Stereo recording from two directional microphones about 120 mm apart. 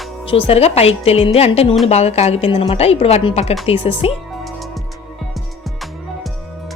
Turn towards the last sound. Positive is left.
turn(degrees=0)  # may be behind; listen again after turning